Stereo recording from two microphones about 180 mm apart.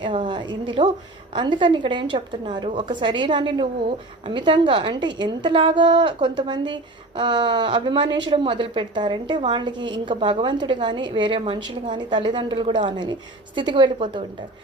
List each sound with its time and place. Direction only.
0.0 s speech: 25° right (ahead or behind)